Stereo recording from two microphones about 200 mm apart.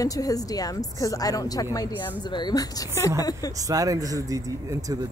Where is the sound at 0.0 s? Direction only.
15° left (ahead or behind).